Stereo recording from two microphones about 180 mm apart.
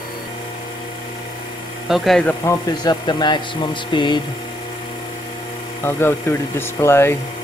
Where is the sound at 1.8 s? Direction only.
Centre (ahead or behind).